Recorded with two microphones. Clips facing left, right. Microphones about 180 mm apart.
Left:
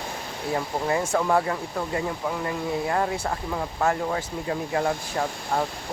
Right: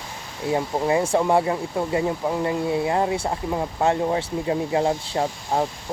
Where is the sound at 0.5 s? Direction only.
20° right (ahead or behind).